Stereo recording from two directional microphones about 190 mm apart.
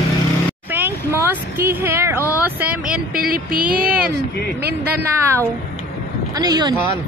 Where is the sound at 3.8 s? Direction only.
5° right (ahead or behind).